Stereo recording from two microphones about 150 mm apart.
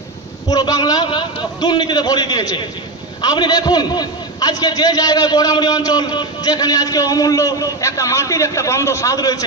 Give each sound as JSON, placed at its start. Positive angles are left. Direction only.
{"t": 0.5, "sound": "a man's voice", "side_deg": 25}